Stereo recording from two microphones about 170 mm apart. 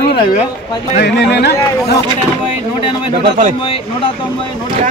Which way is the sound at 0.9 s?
80° left.